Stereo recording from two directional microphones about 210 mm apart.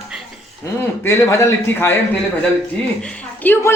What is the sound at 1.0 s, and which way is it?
Speech, 15° left (ahead or behind).